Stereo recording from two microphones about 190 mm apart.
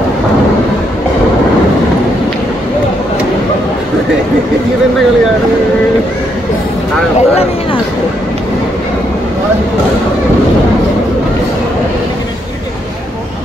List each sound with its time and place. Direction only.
7.2 s vehicle: 30° left (ahead or behind)